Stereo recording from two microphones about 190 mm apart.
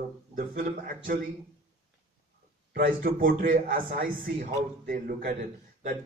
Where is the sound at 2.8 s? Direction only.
50° right (ahead or behind).